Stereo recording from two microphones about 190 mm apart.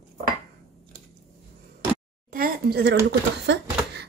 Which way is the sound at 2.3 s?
50° right (ahead or behind).